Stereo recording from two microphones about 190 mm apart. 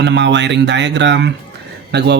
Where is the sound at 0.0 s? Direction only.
65° right (ahead or behind).